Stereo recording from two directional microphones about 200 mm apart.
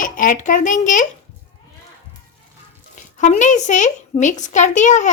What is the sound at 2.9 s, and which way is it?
A woman's voice, 40° left (ahead or behind).